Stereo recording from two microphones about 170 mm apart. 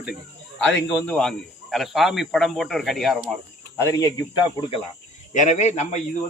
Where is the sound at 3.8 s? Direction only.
20° left (ahead or behind).